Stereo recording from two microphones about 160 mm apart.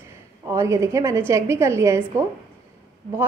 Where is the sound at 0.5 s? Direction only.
20° right (ahead or behind).